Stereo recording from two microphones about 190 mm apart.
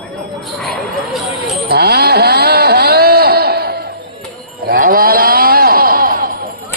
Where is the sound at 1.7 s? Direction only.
55° right (ahead or behind).